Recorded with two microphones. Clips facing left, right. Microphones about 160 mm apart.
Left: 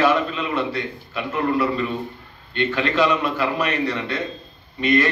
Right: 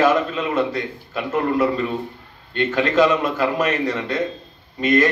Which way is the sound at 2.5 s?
45° right (ahead or behind).